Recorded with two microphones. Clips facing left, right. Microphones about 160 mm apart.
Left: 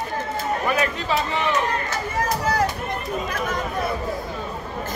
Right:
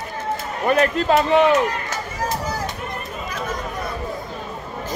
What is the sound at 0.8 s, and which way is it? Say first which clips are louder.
Speech: right 6 dB; 55° right (ahead or behind).